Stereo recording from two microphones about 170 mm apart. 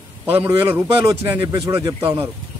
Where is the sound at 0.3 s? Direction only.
15° right (ahead or behind).